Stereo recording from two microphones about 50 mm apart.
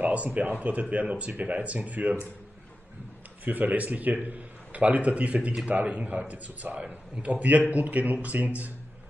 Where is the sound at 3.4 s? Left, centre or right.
Right.